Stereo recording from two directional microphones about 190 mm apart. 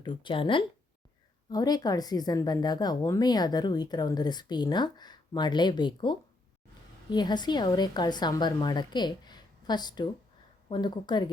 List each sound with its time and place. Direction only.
0.0 s a woman's voice: 25° left (ahead or behind)